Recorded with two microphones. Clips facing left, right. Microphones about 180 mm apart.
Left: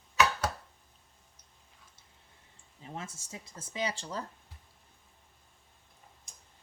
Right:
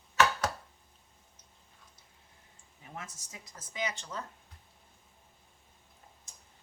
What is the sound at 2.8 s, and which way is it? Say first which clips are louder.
Speech: left 3 dB; 25° left (ahead or behind).